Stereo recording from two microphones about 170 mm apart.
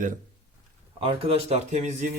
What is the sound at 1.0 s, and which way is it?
Speech, 35° right (ahead or behind).